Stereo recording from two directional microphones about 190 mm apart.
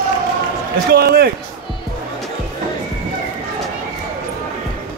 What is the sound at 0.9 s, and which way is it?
Speech, 55° right (ahead or behind).